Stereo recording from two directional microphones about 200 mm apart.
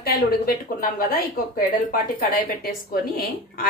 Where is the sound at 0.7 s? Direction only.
45° left (ahead or behind).